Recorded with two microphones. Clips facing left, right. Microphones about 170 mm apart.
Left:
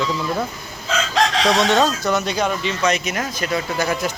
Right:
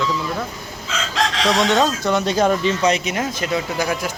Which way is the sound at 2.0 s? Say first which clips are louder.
Right 3 dB; 30° right (ahead or behind).